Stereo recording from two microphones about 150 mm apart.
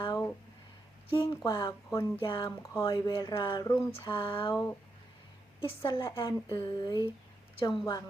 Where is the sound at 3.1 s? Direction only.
30° left (ahead or behind).